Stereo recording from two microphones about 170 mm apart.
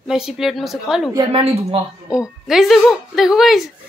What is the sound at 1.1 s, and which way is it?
Speech, 35° right (ahead or behind).